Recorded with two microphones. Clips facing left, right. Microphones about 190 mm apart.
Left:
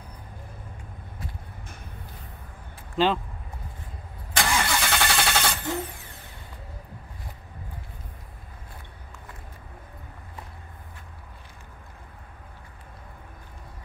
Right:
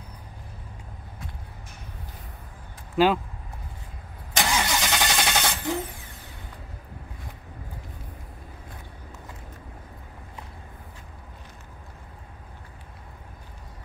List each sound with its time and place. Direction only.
3.0 s speech: 10° right (ahead or behind)
4.4 s vehicle: 20° right (ahead or behind)